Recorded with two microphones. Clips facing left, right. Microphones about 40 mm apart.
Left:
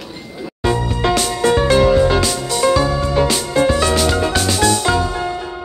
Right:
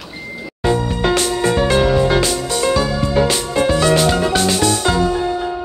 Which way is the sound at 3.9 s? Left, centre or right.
Centre.